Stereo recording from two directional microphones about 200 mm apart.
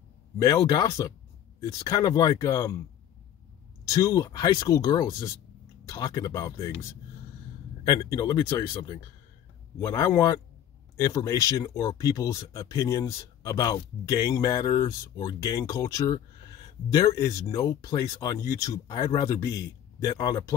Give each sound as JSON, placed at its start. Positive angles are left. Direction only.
{"t": 0.4, "sound": "speech", "side_deg": 15}
{"t": 3.9, "sound": "speech", "side_deg": 15}